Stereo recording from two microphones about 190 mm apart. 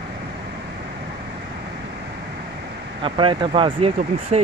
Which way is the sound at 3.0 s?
25° right (ahead or behind).